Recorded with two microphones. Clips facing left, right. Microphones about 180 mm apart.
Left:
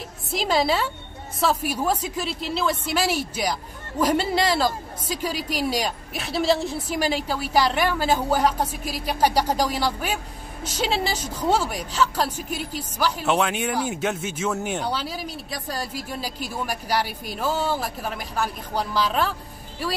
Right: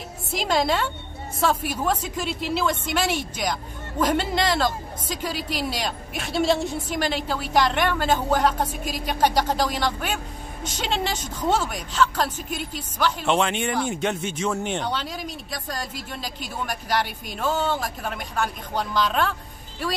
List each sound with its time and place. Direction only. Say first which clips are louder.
0.3 s a woman's voice: left 1 dB; centre (ahead or behind)